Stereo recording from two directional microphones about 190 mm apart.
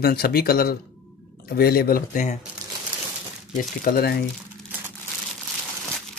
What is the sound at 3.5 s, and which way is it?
Speech, 50° left (ahead or behind).